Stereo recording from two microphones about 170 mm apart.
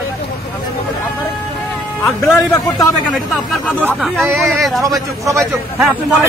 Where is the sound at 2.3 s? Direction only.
20° left (ahead or behind).